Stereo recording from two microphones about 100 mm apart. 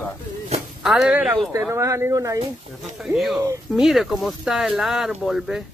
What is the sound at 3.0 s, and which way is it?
Speech, centre (ahead or behind).